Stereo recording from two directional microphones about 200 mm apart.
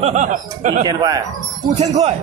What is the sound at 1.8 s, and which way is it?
Speech, 30° right (ahead or behind).